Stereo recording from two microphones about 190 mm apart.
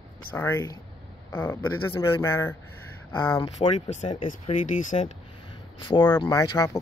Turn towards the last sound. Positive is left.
turn(degrees=20)  # may be behind; listen again after turning